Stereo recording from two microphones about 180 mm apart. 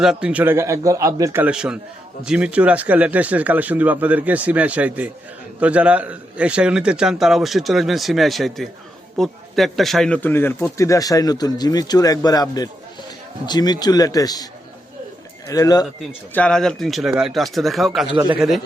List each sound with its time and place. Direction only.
0.0 s a man's voice: 5° right (ahead or behind); by 14.4 s 20° left (ahead or behind)
15.4 s speech: 20° left (ahead or behind)
16.3 s a man's voice: 5° left (ahead or behind)